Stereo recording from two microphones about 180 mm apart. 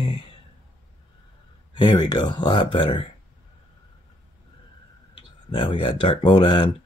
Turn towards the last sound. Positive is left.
turn(degrees=25)  # may be behind; listen again after turning